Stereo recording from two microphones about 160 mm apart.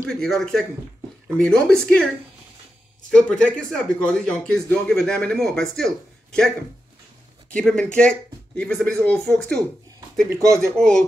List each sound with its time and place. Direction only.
0.0 s speech: 5° left (ahead or behind)
3.1 s speech: 5° left (ahead or behind)
7.5 s speech: 5° left (ahead or behind)
10.3 s speech: 15° right (ahead or behind)
10.8 s speech: 5° left (ahead or behind)